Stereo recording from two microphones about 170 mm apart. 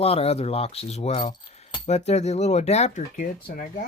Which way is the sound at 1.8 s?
40° left (ahead or behind).